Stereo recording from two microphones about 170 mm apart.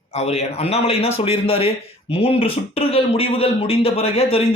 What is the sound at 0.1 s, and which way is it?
Speech, 40° left (ahead or behind).